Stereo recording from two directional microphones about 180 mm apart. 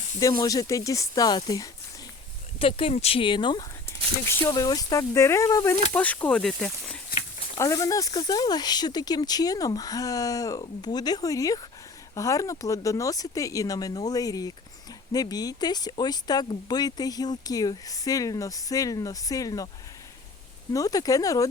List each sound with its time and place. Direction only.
0.2 s speech: 20° left (ahead or behind)
2.6 s speech: 30° left (ahead or behind)
4.3 s speech: 15° left (ahead or behind)
7.5 s speech: 20° left (ahead or behind)
20.7 s speech: 20° left (ahead or behind)